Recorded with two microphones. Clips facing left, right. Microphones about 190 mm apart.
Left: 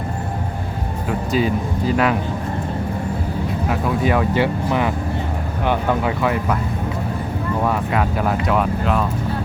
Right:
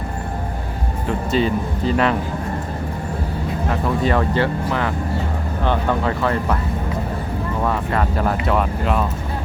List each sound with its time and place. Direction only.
1.0 s speech: 5° left (ahead or behind)
3.7 s speech: 10° left (ahead or behind)
7.6 s speech: 5° left (ahead or behind)